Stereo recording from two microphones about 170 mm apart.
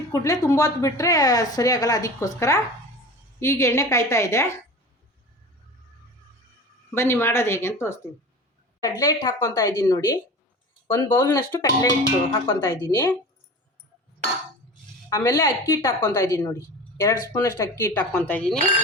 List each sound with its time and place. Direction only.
0.1 s speech: 15° left (ahead or behind)
6.9 s speech: 15° left (ahead or behind)
15.1 s speech: 20° left (ahead or behind)